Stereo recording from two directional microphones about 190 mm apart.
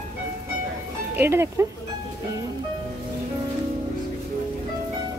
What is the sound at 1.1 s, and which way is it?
Speech, 10° right (ahead or behind).